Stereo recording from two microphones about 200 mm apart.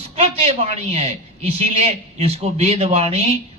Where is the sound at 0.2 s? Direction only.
30° right (ahead or behind).